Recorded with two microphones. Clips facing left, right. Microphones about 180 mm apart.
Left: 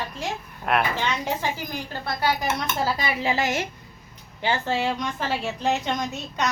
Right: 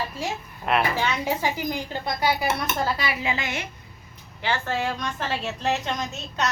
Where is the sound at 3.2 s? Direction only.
40° left (ahead or behind).